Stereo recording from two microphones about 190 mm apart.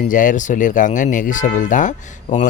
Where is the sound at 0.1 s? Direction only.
45° left (ahead or behind).